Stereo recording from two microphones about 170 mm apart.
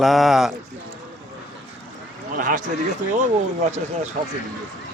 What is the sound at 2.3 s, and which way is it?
Speech, 50° right (ahead or behind).